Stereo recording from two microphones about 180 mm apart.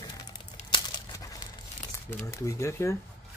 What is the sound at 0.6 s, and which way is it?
Crumpling, 40° left (ahead or behind).